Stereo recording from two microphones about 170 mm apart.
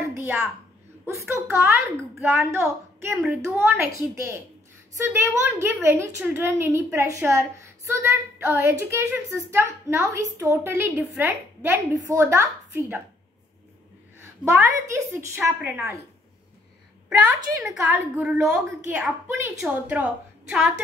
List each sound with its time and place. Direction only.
0.2 s a child's voice: 10° right (ahead or behind)
14.2 s a woman's voice: 15° right (ahead or behind)
18.1 s a woman's voice: 5° right (ahead or behind)